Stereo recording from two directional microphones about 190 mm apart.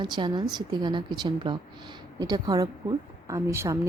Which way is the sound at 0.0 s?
25° right (ahead or behind).